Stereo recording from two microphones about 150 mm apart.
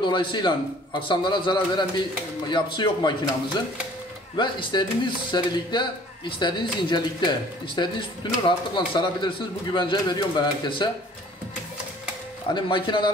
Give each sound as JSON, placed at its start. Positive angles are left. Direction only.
{"t": 0.0, "sound": "speech", "side_deg": 30}
{"t": 4.4, "sound": "speech", "side_deg": 35}
{"t": 12.5, "sound": "speech", "side_deg": 30}